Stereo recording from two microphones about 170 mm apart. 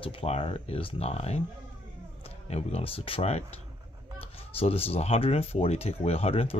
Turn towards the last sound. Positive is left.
turn(degrees=35)  # may be behind; listen again after turning